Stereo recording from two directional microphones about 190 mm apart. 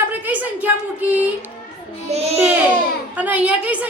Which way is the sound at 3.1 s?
10° right (ahead or behind).